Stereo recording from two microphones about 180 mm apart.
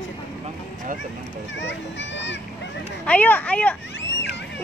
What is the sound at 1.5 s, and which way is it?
Speech, 90° left.